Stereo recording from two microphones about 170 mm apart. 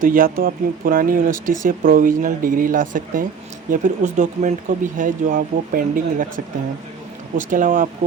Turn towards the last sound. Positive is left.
turn(degrees=-50)  # may be behind; listen again after turning